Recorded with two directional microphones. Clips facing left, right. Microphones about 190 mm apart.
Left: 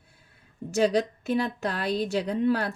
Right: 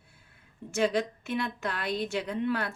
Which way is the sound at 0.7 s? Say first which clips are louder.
Left 4 dB; 40° left (ahead or behind).